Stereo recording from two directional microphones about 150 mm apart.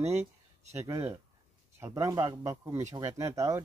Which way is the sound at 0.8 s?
20° right (ahead or behind).